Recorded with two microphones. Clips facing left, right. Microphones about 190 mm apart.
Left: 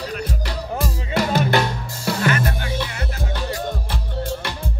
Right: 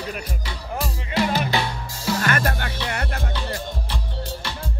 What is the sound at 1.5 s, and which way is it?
Drum, 55° left (ahead or behind).